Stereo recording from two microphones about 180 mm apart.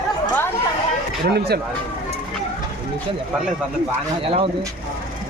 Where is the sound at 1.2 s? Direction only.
60° right (ahead or behind).